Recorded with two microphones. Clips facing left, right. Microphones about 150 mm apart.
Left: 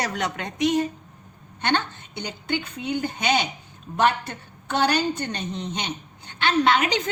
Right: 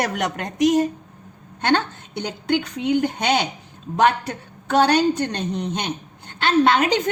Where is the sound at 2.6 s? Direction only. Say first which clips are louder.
Right 7 dB; 90° right.